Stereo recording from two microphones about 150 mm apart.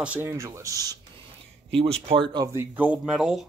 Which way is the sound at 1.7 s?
40° right (ahead or behind).